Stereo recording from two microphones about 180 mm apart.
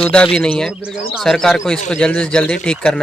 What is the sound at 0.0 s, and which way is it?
Speech, 5° left (ahead or behind).